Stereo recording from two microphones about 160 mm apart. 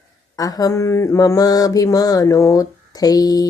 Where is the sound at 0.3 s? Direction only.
25° left (ahead or behind).